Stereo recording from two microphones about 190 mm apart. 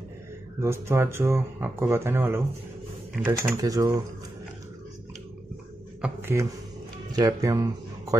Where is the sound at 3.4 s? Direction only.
15° right (ahead or behind).